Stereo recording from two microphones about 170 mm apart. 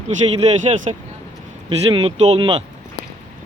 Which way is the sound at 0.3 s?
40° right (ahead or behind).